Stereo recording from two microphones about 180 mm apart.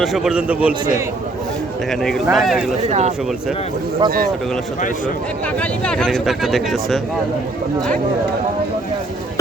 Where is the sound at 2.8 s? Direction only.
40° right (ahead or behind).